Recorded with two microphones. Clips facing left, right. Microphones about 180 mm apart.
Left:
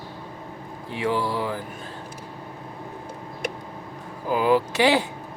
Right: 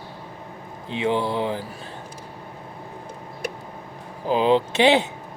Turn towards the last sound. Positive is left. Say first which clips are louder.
# right 2 dB
turn(degrees=-25)  # may be behind; listen again after turning